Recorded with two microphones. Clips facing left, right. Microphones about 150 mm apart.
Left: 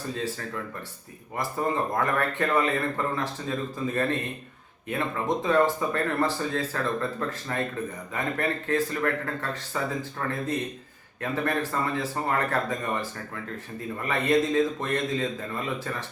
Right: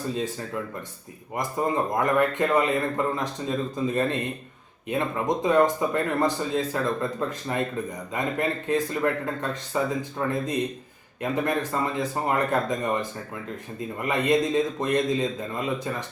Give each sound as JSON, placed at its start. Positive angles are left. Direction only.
{"t": 0.1, "sound": "speech", "side_deg": -15}